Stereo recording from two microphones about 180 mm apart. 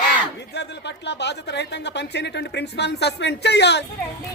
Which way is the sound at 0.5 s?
70° left (ahead or behind).